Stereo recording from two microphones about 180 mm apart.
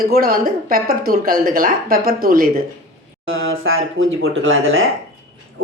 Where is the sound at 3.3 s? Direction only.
90° right.